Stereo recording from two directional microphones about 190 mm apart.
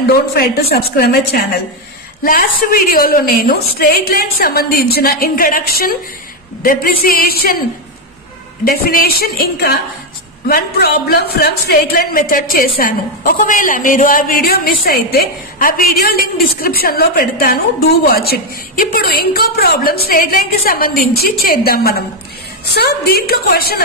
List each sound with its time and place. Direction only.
0.1 s a woman's voice: 55° left (ahead or behind)
8.6 s a woman's voice: 50° left (ahead or behind)